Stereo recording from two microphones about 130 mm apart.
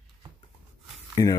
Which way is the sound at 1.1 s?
25° left (ahead or behind).